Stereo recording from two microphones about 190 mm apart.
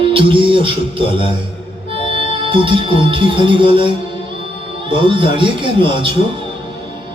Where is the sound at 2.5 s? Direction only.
25° right (ahead or behind).